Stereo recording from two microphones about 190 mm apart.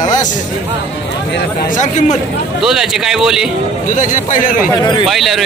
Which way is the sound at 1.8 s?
40° left (ahead or behind).